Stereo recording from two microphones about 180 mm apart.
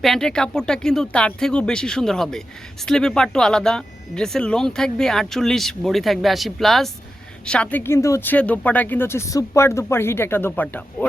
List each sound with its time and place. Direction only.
0.0 s speech: centre (ahead or behind)